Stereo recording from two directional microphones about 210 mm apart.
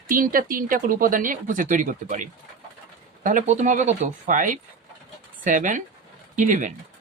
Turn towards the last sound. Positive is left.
turn(degrees=-35)  # may be behind; listen again after turning